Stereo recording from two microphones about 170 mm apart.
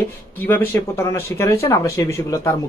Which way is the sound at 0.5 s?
15° left (ahead or behind).